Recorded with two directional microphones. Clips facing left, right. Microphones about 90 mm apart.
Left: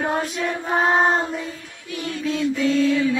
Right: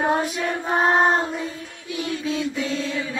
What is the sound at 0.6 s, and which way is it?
Child singing, 5° right (ahead or behind).